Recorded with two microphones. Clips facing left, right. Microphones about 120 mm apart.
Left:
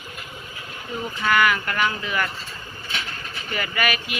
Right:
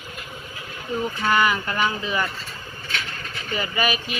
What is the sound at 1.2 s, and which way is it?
Speech, 25° right (ahead or behind).